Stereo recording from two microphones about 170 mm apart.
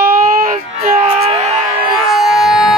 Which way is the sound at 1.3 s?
40° right (ahead or behind).